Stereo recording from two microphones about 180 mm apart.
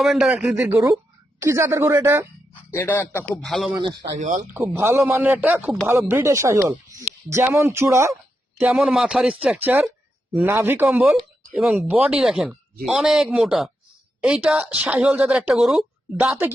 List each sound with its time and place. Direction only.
0.0 s a woman's voice: centre (ahead or behind)
2.6 s speech: 15° left (ahead or behind)
3.3 s speech: centre (ahead or behind)
4.2 s speech: 45° right (ahead or behind)
4.5 s a woman's voice: 10° right (ahead or behind)